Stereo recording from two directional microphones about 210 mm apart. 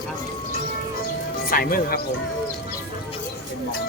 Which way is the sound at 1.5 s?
45° left (ahead or behind).